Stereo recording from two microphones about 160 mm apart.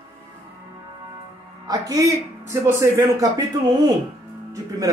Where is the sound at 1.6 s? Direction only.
25° right (ahead or behind).